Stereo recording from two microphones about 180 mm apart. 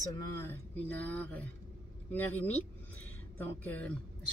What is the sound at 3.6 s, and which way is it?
Speech, 10° left (ahead or behind).